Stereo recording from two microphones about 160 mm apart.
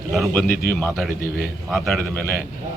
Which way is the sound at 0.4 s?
60° left (ahead or behind).